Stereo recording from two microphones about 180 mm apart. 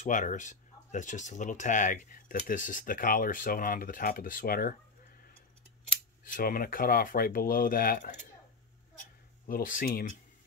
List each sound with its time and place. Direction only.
0.0 s speech: 45° left (ahead or behind)
6.2 s speech: 50° left (ahead or behind)
9.5 s speech: 50° left (ahead or behind)